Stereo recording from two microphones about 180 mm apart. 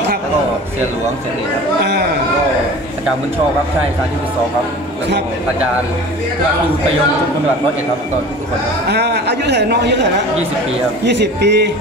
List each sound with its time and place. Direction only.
1.8 s speech: 65° right (ahead or behind)
8.8 s a man's voice: 65° right (ahead or behind)
11.1 s a man's voice: 70° right (ahead or behind)